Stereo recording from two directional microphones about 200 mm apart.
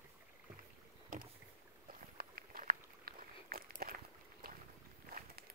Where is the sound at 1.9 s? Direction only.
45° right (ahead or behind).